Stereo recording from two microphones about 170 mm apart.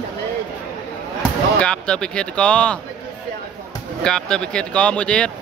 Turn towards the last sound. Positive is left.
turn(degrees=5)  # may be behind; listen again after turning